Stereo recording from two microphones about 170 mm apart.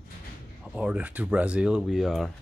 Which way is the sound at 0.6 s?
5° right (ahead or behind).